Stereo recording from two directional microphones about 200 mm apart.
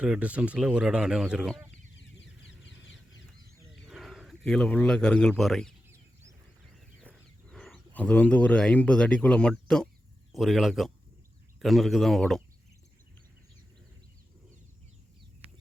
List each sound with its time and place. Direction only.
0.0 s speech: 5° right (ahead or behind)
2.0 s a sound: 65° left (ahead or behind)
3.8 s speech: centre (ahead or behind)
7.5 s speech: centre (ahead or behind)